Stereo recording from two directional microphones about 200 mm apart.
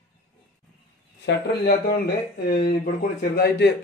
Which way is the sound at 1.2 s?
50° left (ahead or behind).